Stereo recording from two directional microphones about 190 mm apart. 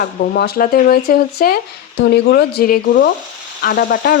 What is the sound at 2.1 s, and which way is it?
Speech, 60° left (ahead or behind).